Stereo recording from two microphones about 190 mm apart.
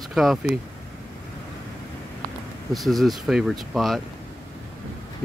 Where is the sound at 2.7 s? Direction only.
Centre (ahead or behind).